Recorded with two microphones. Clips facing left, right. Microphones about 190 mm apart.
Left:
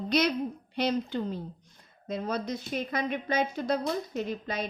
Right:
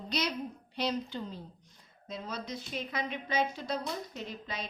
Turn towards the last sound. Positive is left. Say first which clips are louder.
# left 8 dB
turn(degrees=50)  # may be behind; listen again after turning